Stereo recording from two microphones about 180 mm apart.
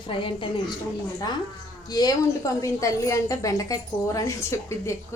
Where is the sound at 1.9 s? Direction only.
20° left (ahead or behind).